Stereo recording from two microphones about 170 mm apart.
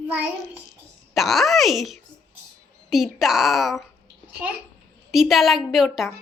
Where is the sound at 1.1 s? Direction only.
Centre (ahead or behind).